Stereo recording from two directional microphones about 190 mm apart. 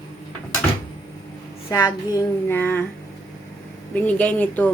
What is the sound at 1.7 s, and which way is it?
Speech, 15° left (ahead or behind).